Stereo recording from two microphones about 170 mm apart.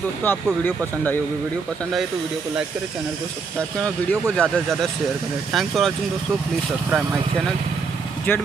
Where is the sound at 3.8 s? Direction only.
5° left (ahead or behind).